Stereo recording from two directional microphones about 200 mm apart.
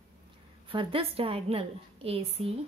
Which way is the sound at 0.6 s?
25° right (ahead or behind).